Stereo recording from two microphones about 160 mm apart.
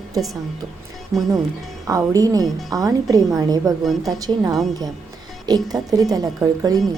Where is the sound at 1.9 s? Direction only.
20° right (ahead or behind).